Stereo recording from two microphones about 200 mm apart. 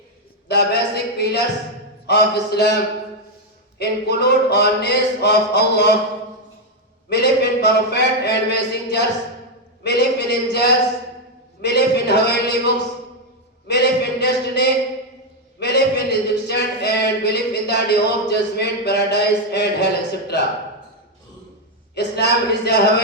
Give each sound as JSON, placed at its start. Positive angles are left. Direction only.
{"t": 0.4, "sound": "speech", "side_deg": 55}
{"t": 3.8, "sound": "speech", "side_deg": 55}
{"t": 7.1, "sound": "speech", "side_deg": 55}
{"t": 21.9, "sound": "speech", "side_deg": 55}